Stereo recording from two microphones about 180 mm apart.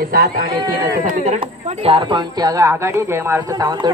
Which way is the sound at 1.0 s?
40° right (ahead or behind).